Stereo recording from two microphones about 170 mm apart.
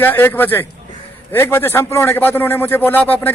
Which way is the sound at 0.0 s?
10° left (ahead or behind).